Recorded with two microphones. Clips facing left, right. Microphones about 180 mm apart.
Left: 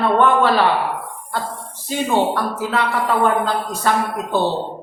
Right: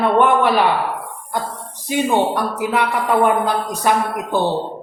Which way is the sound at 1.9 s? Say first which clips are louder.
Right 1 dB; 15° right (ahead or behind).